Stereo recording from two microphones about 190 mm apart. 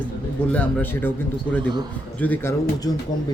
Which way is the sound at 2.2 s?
10° left (ahead or behind).